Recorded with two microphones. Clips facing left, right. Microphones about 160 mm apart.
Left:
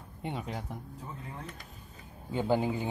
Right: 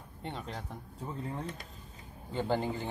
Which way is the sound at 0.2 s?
10° left (ahead or behind).